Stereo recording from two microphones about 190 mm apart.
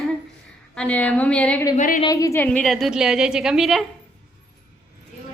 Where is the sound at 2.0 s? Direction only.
20° left (ahead or behind); by 3.9 s centre (ahead or behind).